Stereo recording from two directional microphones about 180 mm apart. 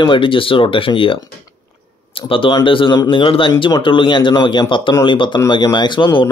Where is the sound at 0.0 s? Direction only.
30° left (ahead or behind).